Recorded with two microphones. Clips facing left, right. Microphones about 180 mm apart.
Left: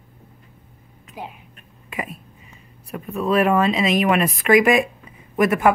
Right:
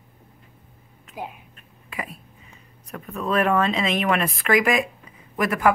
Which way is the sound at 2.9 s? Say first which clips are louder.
Left 4 dB; 10° left (ahead or behind).